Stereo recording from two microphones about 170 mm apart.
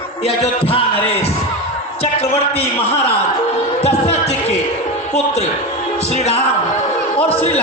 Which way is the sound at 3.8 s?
40° left (ahead or behind).